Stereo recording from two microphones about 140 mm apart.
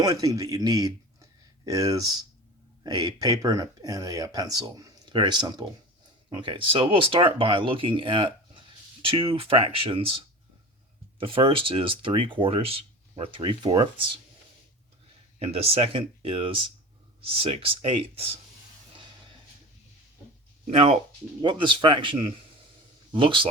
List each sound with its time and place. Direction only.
0.0 s speech: 25° right (ahead or behind)
11.2 s speech: 40° right (ahead or behind)
15.4 s speech: 45° right (ahead or behind)
20.7 s speech: 45° right (ahead or behind)